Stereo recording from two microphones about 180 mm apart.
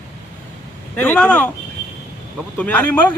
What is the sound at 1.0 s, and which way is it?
Speech, 10° left (ahead or behind).